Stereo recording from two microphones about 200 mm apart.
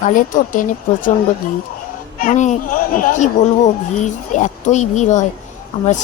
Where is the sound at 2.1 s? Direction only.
40° left (ahead or behind).